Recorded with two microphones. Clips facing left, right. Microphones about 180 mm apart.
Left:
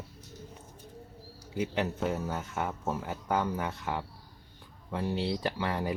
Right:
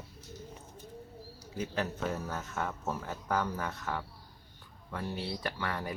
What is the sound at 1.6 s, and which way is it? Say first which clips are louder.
Speech: left 4 dB; 10° left (ahead or behind).